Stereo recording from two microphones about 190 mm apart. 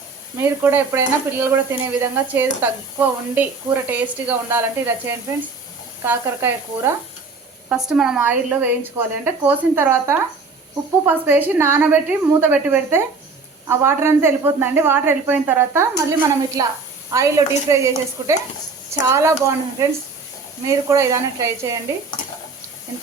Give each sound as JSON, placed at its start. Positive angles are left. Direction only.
{"t": 0.3, "sound": "speech", "side_deg": -10}